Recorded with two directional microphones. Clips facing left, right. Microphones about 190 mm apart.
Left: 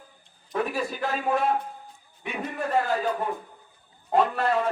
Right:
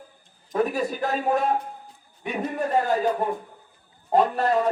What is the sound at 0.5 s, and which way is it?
A man's voice, 40° right (ahead or behind).